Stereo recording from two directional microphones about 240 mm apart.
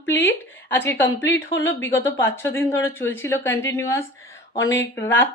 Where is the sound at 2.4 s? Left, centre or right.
Centre.